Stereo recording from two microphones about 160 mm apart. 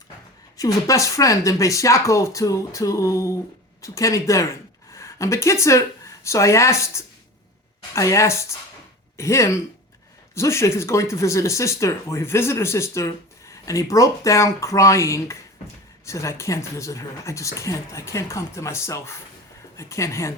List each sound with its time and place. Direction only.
0.5 s speech: 20° left (ahead or behind)